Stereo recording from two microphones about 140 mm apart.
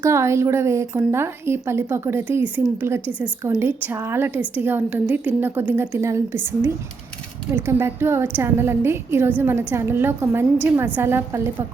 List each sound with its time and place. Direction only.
0.0 s a woman's voice: 20° right (ahead or behind)
3.6 s a woman's voice: 15° right (ahead or behind)